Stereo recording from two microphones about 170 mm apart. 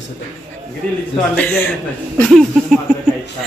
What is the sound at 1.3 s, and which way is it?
A man's voice, 10° left (ahead or behind).